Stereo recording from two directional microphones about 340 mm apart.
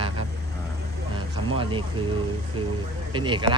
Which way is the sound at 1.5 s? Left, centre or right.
Centre.